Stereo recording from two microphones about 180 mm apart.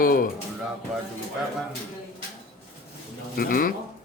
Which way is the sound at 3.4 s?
55° left (ahead or behind).